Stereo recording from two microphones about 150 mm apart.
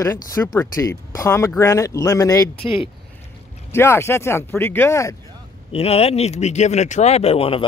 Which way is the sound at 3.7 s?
15° left (ahead or behind).